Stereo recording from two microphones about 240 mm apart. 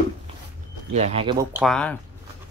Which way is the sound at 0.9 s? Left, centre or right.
Right.